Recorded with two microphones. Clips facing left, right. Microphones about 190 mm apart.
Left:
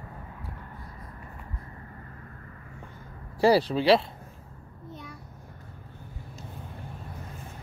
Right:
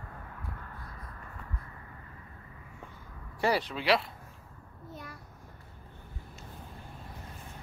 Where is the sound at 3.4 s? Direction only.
30° left (ahead or behind).